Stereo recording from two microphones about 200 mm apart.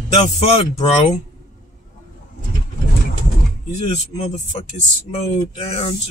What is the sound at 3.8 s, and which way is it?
Speech, 35° left (ahead or behind).